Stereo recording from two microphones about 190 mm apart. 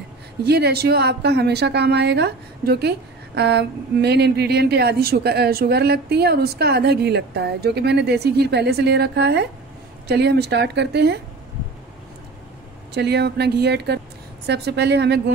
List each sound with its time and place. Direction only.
0.5 s a woman's voice: 55° right (ahead or behind)
12.9 s a woman's voice: 60° right (ahead or behind)